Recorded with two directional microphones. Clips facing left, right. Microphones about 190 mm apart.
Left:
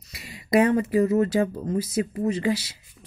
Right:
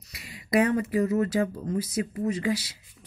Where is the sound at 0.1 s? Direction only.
25° left (ahead or behind).